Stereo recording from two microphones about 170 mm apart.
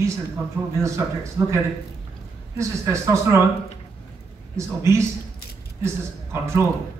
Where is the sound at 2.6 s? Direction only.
15° right (ahead or behind).